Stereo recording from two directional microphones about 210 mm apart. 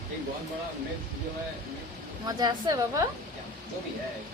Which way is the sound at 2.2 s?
20° right (ahead or behind).